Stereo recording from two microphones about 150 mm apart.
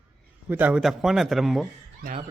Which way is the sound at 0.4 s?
10° right (ahead or behind).